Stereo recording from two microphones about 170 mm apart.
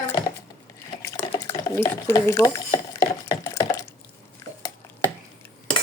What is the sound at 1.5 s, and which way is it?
Stir, 20° left (ahead or behind).